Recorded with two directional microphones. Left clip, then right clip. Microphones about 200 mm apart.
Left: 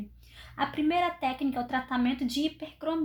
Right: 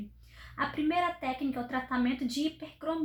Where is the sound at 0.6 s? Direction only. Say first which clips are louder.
Left 2 dB; 30° left (ahead or behind).